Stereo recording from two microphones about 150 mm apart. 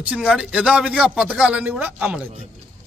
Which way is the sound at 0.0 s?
5° right (ahead or behind).